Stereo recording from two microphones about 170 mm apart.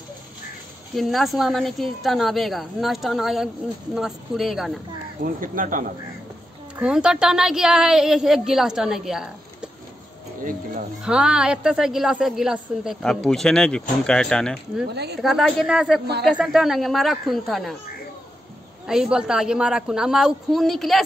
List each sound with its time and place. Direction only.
0.9 s a woman's voice: centre (ahead or behind)
5.2 s speech: 50° right (ahead or behind)
6.8 s a woman's voice: 5° right (ahead or behind)
11.1 s a woman's voice: 5° right (ahead or behind)
14.9 s speech: 75° right (ahead or behind)
15.2 s a woman's voice: centre (ahead or behind)
18.9 s a woman's voice: 5° right (ahead or behind)